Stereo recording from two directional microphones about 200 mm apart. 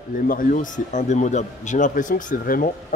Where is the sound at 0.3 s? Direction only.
45° left (ahead or behind).